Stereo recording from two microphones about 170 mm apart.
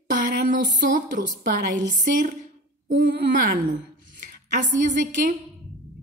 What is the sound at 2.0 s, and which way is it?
Speech, 50° right (ahead or behind).